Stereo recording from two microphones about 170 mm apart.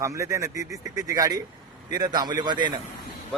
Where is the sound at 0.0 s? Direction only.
15° right (ahead or behind).